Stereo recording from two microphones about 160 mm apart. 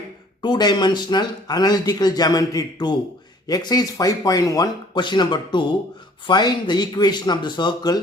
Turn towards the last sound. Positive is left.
turn(degrees=25)  # may be behind; listen again after turning